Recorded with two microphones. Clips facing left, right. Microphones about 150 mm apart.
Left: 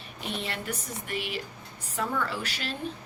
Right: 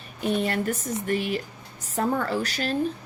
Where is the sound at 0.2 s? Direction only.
45° right (ahead or behind).